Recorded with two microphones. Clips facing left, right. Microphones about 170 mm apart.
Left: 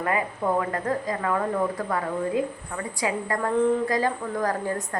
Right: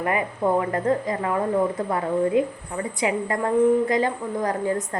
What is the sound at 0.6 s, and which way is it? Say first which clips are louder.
A woman's voice: right 4 dB; 25° right (ahead or behind).